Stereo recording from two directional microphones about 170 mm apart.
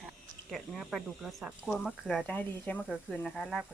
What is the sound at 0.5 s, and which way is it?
Speech, centre (ahead or behind).